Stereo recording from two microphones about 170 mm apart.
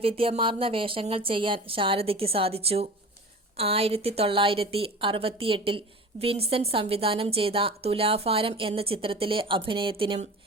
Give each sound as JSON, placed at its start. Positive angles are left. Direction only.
{"t": 0.0, "sound": "a woman's voice", "side_deg": -35}